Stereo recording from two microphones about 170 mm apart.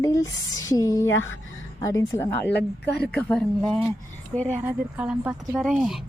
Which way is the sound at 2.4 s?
80° left.